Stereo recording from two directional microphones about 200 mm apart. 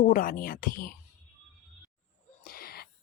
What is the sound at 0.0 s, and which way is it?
Speech, 45° left (ahead or behind).